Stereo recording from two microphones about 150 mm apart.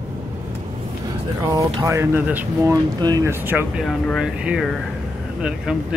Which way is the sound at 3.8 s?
Centre (ahead or behind).